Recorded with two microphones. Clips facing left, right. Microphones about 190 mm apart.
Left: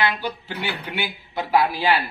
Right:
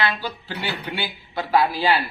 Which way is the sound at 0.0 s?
15° left (ahead or behind).